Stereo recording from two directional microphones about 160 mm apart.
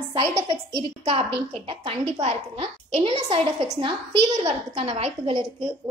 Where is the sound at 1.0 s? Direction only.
35° right (ahead or behind).